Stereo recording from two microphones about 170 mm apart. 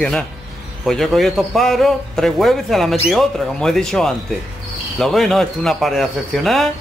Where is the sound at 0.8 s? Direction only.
Centre (ahead or behind).